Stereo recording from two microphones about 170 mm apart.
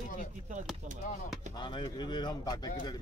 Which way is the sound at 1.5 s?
25° left (ahead or behind).